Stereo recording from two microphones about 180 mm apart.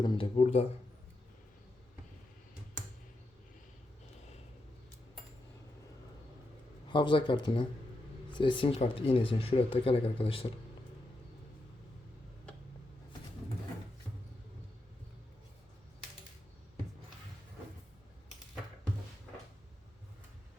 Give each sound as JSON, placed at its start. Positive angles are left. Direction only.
{"t": 0.0, "sound": "speech", "side_deg": 25}
{"t": 6.8, "sound": "speech", "side_deg": 25}